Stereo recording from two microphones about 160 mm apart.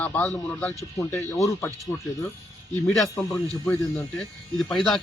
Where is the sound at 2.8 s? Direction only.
Centre (ahead or behind).